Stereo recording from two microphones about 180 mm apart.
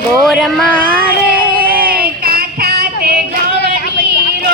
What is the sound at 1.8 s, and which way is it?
Child singing, 5° right (ahead or behind).